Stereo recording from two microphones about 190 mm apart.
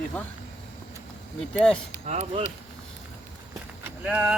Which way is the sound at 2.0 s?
40° right (ahead or behind).